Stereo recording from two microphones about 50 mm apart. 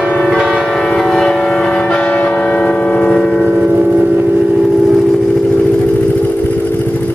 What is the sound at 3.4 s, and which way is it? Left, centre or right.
Vehicle, right.